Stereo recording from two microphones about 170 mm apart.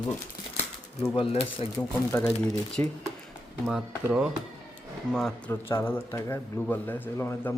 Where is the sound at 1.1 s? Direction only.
35° left (ahead or behind).